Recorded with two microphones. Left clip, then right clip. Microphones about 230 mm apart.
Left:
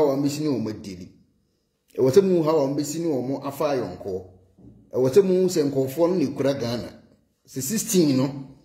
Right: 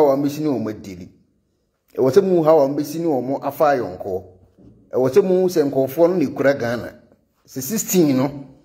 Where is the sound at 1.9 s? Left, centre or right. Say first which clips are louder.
Right 3 dB; centre.